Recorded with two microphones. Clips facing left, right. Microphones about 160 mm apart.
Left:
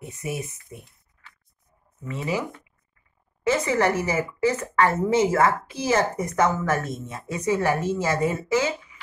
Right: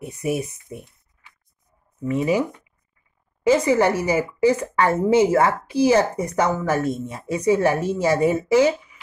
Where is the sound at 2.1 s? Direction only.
15° right (ahead or behind).